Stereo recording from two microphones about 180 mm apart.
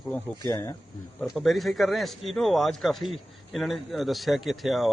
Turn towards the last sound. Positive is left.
turn(degrees=0)  # may be behind; listen again after turning